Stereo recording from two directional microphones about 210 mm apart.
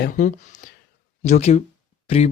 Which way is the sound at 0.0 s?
40° left (ahead or behind).